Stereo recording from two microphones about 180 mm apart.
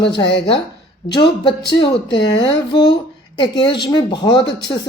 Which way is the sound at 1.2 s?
70° left (ahead or behind).